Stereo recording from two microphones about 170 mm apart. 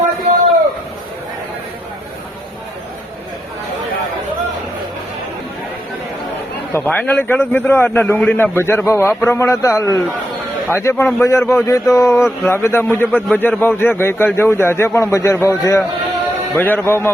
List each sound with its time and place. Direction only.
6.7 s a man's voice: 10° left (ahead or behind)